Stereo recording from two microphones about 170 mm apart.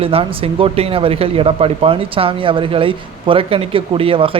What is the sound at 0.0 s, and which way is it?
Speech, 35° right (ahead or behind).